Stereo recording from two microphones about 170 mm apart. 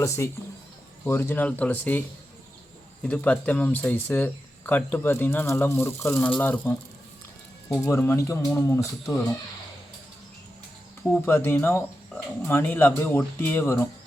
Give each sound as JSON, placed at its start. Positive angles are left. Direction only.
{"t": 0.2, "sound": "speech", "side_deg": 15}
{"t": 7.9, "sound": "speech", "side_deg": 15}
{"t": 11.1, "sound": "speech", "side_deg": 15}